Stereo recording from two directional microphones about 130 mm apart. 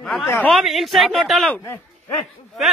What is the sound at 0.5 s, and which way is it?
A man's voice, centre (ahead or behind).